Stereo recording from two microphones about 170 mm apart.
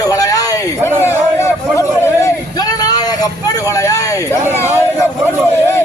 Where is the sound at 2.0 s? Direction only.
15° left (ahead or behind).